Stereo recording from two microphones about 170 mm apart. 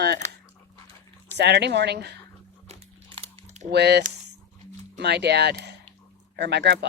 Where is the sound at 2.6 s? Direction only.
35° right (ahead or behind).